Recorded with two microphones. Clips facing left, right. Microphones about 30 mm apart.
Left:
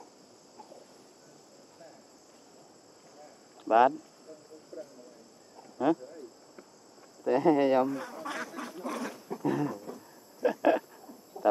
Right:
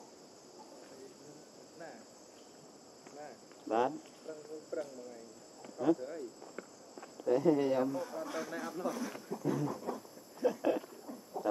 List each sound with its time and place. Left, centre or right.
3.6 s speech: left
4.7 s speech: right
5.8 s speech: left
7.2 s speech: left
9.4 s a sound: left